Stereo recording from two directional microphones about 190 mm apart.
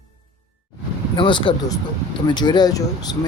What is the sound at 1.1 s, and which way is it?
Speech, 25° left (ahead or behind).